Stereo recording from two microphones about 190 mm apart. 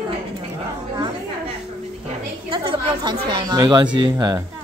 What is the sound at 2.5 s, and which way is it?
A woman's voice, 25° right (ahead or behind).